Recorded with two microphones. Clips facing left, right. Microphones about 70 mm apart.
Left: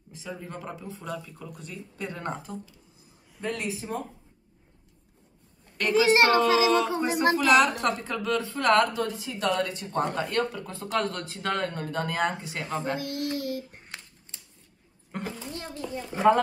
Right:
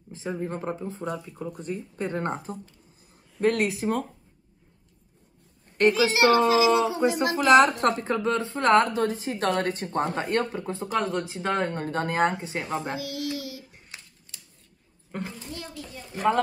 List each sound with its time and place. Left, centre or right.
0.1 s a woman's voice: right
3.3 s speech: right
5.9 s a child's voice: left
7.3 s a woman's voice: right
10.2 s a woman's voice: right
12.9 s a sound: left
14.3 s scissors: left
15.1 s a sound: centre
15.5 s a sound: left